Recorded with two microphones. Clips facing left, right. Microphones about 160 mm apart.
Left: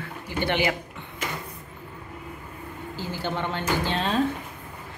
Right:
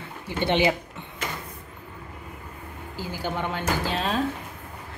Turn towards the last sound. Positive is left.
turn(degrees=-5)  # may be behind; listen again after turning